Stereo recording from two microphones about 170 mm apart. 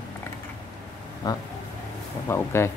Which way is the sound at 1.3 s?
20° left (ahead or behind).